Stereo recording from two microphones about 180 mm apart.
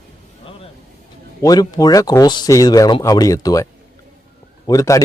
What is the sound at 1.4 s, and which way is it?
Speech, 20° left (ahead or behind).